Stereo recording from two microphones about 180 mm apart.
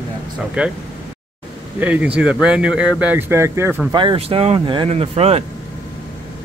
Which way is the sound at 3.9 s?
30° right (ahead or behind).